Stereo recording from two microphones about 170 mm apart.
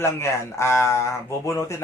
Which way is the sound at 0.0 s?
15° left (ahead or behind).